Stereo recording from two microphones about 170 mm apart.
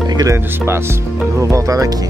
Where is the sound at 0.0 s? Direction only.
25° right (ahead or behind).